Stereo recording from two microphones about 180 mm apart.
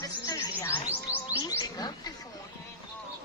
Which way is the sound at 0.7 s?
10° right (ahead or behind).